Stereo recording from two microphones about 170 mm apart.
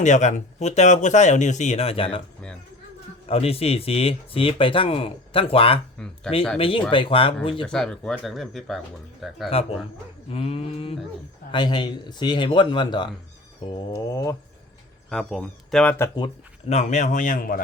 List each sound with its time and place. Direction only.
0.0 s speech: 45° left (ahead or behind)
3.2 s speech: 35° left (ahead or behind)
7.7 s speech: 5° left (ahead or behind)
9.5 s a man's voice: 35° left (ahead or behind); by 14.3 s 20° left (ahead or behind)
15.1 s speech: centre (ahead or behind)
16.6 s speech: 40° left (ahead or behind)